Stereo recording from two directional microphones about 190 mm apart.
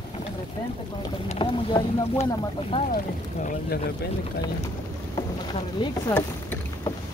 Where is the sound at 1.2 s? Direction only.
30° left (ahead or behind).